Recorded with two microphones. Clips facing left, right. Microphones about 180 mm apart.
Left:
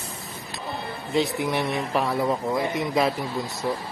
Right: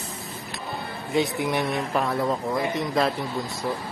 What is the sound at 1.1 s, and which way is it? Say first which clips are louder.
Speech: even; centre (ahead or behind).